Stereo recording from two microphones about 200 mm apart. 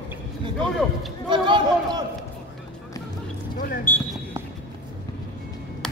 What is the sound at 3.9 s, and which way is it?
Speech, 10° left (ahead or behind).